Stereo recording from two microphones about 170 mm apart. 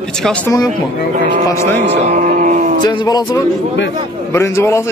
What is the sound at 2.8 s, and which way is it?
A man's voice, 25° left (ahead or behind).